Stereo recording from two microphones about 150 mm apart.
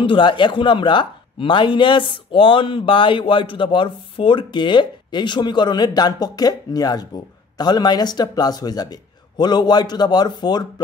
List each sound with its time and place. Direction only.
0.0 s a man's voice: 35° left (ahead or behind)